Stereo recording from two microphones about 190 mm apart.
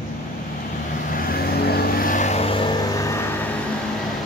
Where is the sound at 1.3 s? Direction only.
55° left (ahead or behind); by 3.5 s 10° left (ahead or behind).